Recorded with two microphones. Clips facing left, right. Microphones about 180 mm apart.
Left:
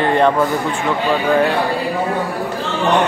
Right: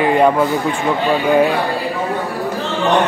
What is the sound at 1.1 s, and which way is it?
Speech, 15° right (ahead or behind).